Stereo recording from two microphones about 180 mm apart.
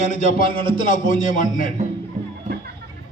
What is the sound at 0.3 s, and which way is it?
Speech, 50° left (ahead or behind).